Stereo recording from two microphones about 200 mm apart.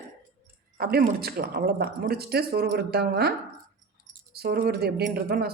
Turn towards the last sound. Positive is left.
turn(degrees=-50)  # may be behind; listen again after turning